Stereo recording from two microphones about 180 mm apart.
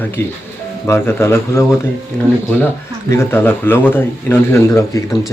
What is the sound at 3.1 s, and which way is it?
Speech, 15° left (ahead or behind).